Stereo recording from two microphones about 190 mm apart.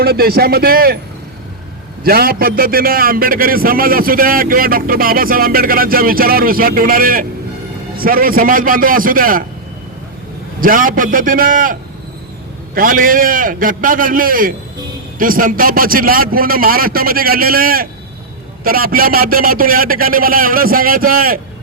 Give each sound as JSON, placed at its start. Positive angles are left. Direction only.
{"t": 0.0, "sound": "a man's voice", "side_deg": -55}
{"t": 2.0, "sound": "a man's voice", "side_deg": -55}
{"t": 10.6, "sound": "a man's voice", "side_deg": -45}